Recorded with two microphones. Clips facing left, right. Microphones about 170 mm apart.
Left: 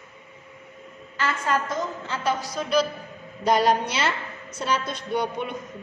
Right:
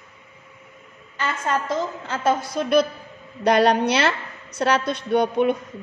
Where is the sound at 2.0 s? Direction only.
45° right (ahead or behind).